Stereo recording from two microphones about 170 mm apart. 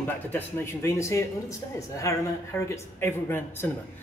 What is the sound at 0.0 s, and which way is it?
A woman's voice, 10° left (ahead or behind).